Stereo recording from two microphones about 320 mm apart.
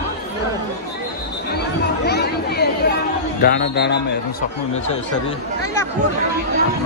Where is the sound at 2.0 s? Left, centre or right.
Left.